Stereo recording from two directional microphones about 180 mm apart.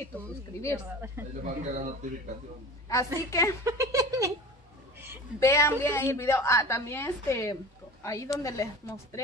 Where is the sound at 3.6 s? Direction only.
20° right (ahead or behind).